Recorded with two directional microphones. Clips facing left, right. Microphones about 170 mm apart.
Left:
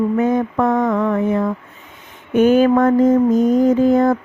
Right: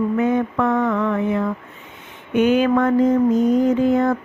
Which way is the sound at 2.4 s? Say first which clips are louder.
Left 4 dB; 45° left (ahead or behind).